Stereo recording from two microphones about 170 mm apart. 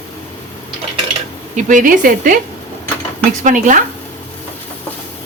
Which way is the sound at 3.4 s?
50° right (ahead or behind).